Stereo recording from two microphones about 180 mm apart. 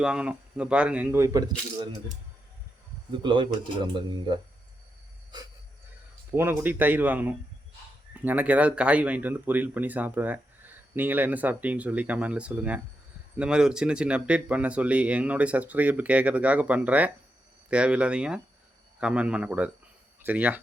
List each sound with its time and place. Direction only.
0.0 s speech: 5° right (ahead or behind); by 2.0 s 20° right (ahead or behind)
3.2 s speech: 25° right (ahead or behind)
6.3 s speech: 10° right (ahead or behind)